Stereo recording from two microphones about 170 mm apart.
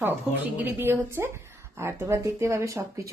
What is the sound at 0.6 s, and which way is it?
A woman's voice, 15° right (ahead or behind).